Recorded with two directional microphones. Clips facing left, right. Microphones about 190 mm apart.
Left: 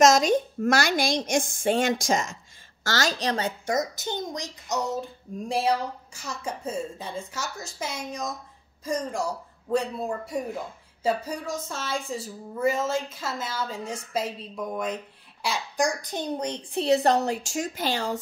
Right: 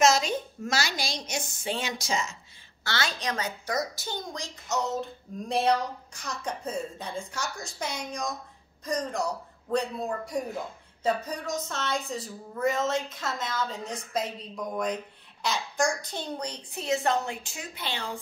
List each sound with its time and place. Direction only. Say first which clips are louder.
0.0 s a woman's voice: left 5 dB; 45° left (ahead or behind); by 4.9 s 15° left (ahead or behind)
5.5 s a man's voice: even; 5° left (ahead or behind)
15.4 s a man's voice: left 1 dB; 10° left (ahead or behind); by 18.2 s 45° left (ahead or behind)